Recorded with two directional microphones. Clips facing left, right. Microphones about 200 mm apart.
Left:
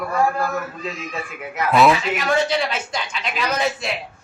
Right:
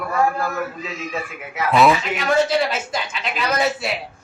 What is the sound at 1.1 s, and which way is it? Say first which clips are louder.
A man's voice: right 1 dB; centre (ahead or behind).